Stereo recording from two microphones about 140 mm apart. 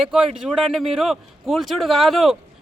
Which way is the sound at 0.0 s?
5° right (ahead or behind).